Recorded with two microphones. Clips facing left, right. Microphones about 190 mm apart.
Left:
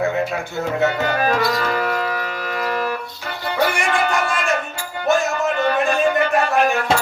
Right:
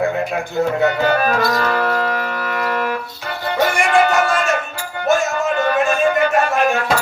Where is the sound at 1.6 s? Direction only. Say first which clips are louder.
Right 3 dB; 50° right (ahead or behind).